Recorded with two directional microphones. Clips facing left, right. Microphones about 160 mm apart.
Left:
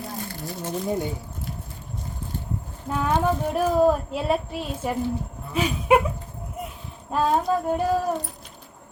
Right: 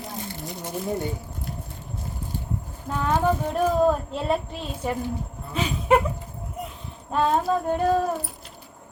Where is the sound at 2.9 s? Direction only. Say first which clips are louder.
Even; 10° left (ahead or behind).